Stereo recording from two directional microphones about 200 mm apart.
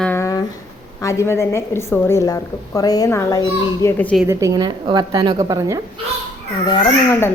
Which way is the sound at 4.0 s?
5° left (ahead or behind).